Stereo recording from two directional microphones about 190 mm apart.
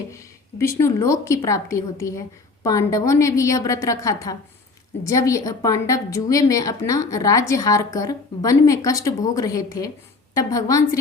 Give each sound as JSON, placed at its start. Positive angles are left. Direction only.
{"t": 0.1, "sound": "a woman's voice", "side_deg": 15}